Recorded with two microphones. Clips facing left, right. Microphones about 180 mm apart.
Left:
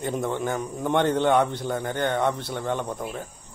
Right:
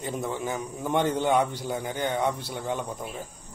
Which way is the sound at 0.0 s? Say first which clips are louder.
Left 4 dB; 5° right (ahead or behind).